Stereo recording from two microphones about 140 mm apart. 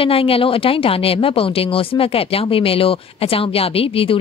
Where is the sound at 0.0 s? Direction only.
40° left (ahead or behind).